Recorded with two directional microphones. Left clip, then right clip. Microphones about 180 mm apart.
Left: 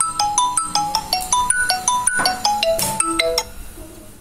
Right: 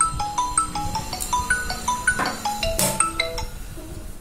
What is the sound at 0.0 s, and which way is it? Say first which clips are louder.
Music: left 5 dB; 45° left (ahead or behind).